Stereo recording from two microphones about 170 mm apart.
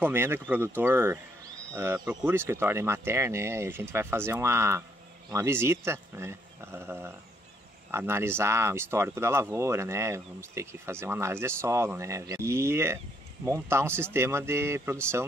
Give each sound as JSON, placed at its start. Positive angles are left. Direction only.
{"t": 0.0, "sound": "speech", "side_deg": -15}